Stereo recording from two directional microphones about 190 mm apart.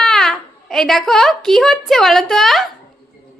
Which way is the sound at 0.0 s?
Centre (ahead or behind).